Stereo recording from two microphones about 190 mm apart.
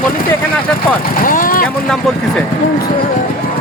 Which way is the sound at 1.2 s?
45° left (ahead or behind).